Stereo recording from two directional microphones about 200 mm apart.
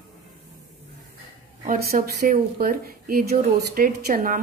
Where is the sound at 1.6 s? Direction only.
45° right (ahead or behind).